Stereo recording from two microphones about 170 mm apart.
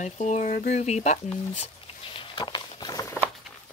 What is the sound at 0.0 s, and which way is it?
Speech, 45° left (ahead or behind).